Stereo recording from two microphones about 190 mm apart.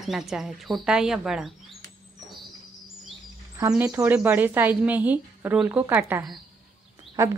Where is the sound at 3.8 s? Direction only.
5° right (ahead or behind).